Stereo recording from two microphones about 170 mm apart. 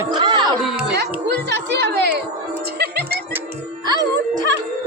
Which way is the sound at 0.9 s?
75° right (ahead or behind).